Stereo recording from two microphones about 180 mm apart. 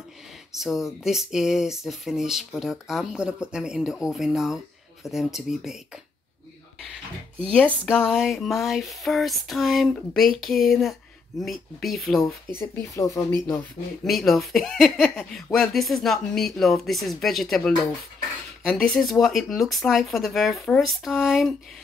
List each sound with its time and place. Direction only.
0.6 s speech: centre (ahead or behind)
7.5 s speech: 5° left (ahead or behind)
12.5 s speech: 15° left (ahead or behind)
14.0 s speech: centre (ahead or behind)